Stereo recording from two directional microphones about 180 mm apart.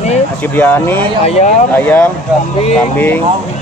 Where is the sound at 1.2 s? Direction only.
35° left (ahead or behind).